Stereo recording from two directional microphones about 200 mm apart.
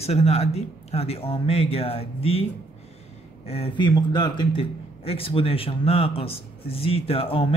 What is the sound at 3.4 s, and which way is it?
Speech, 30° left (ahead or behind).